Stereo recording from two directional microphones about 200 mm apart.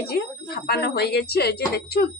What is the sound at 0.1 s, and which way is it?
A woman's voice, 50° left (ahead or behind).